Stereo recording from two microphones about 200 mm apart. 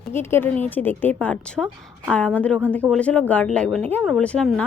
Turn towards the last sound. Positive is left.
turn(degrees=5)  # may be behind; listen again after turning